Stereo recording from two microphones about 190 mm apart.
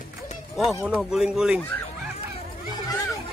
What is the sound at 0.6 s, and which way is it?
Speech, centre (ahead or behind).